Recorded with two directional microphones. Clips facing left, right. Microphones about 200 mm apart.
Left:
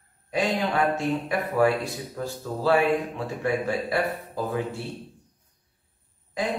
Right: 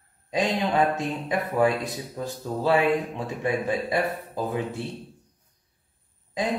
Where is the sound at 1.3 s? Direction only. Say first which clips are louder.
Right 1 dB; 20° right (ahead or behind).